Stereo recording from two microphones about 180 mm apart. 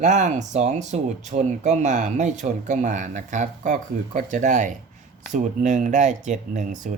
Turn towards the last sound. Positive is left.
turn(degrees=-45)  # may be behind; listen again after turning